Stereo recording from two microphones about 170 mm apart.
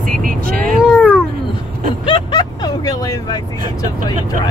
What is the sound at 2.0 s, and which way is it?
Vehicle, 25° left (ahead or behind).